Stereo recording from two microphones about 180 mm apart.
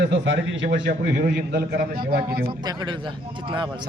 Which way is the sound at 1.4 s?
60° right (ahead or behind).